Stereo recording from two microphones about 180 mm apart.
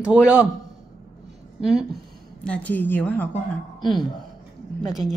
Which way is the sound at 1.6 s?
Centre (ahead or behind).